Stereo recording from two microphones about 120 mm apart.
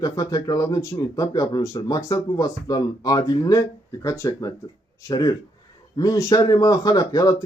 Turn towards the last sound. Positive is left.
turn(degrees=30)  # may be behind; listen again after turning